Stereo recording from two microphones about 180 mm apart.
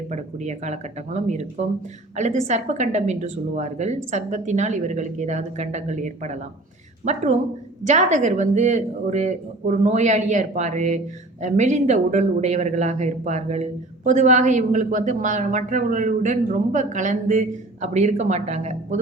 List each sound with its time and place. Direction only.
0.1 s speech: 40° right (ahead or behind)